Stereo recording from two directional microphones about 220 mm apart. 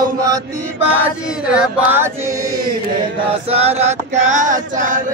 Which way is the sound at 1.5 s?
5° right (ahead or behind).